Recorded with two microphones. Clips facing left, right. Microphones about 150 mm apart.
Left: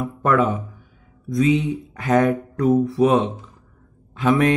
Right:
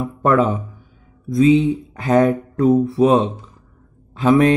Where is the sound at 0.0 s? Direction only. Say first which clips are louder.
Right 3 dB; 30° right (ahead or behind).